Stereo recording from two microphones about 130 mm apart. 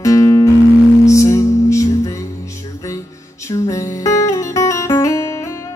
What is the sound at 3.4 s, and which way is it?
Music, 25° left (ahead or behind).